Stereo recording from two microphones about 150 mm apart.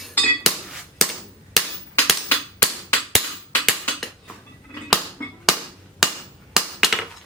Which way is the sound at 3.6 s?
Centre (ahead or behind).